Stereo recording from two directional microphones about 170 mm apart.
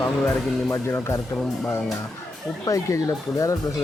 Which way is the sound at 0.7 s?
15° left (ahead or behind).